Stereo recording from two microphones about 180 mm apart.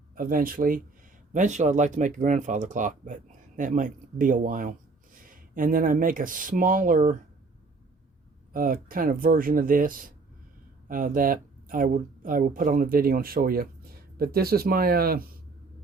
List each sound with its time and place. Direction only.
0.2 s speech: 50° right (ahead or behind)
8.5 s speech: 50° right (ahead or behind)